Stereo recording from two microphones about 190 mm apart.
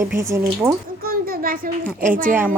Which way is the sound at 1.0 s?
50° right (ahead or behind).